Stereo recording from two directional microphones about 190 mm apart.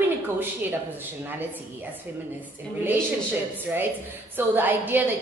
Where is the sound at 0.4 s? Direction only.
10° right (ahead or behind).